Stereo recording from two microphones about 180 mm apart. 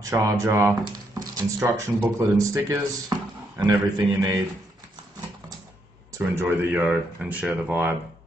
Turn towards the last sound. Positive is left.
turn(degrees=-10)  # may be behind; listen again after turning